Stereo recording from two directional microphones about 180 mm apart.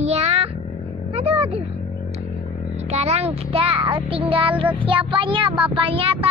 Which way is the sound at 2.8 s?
35° right (ahead or behind).